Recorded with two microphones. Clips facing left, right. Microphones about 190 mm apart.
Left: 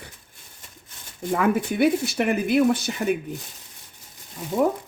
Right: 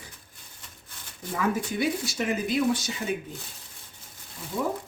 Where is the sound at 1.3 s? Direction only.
60° left (ahead or behind).